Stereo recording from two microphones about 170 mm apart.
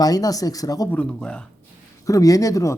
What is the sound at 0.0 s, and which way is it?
Speech, 20° left (ahead or behind).